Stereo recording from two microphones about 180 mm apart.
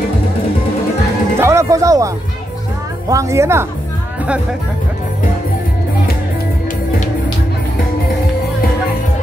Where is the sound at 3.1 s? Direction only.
15° right (ahead or behind).